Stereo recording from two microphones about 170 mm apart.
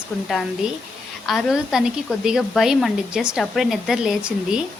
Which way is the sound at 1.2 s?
Centre (ahead or behind).